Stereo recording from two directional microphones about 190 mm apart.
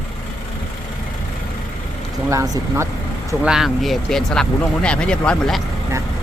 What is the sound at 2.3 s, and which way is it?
Speech, 15° right (ahead or behind).